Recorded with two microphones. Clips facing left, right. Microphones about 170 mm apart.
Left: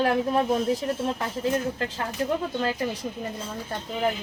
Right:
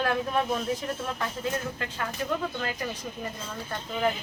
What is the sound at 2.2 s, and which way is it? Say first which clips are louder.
Speech: left 4 dB; 35° left (ahead or behind).